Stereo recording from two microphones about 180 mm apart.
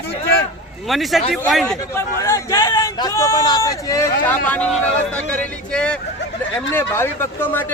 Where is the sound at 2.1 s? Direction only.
15° left (ahead or behind).